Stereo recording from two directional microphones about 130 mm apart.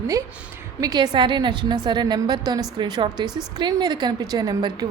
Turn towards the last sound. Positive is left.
turn(degrees=-30)  # may be behind; listen again after turning